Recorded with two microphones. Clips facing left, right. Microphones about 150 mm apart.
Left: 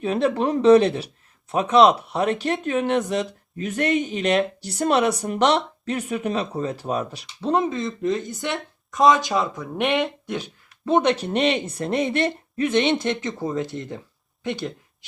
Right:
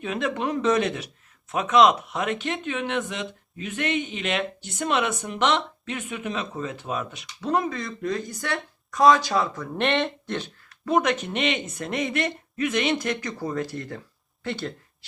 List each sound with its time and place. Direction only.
0.0 s speech: 35° left (ahead or behind); by 10.5 s 10° left (ahead or behind)
10.7 s speech: 25° left (ahead or behind)